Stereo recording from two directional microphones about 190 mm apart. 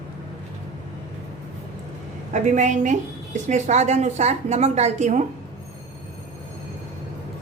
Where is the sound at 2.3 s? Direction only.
40° right (ahead or behind).